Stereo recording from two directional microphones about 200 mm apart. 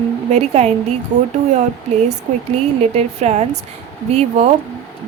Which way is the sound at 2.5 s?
35° right (ahead or behind).